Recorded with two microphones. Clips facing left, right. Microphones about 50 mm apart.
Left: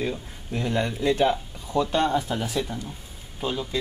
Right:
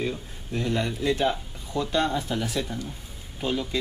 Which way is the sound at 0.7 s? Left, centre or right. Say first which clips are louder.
Left 4 dB; left.